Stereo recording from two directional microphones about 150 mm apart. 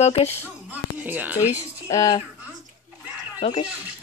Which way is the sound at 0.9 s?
10° right (ahead or behind).